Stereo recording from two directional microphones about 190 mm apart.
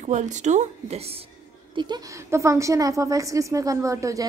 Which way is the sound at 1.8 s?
20° right (ahead or behind).